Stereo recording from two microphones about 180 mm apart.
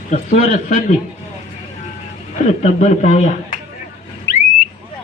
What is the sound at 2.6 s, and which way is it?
Speech, 40° left (ahead or behind).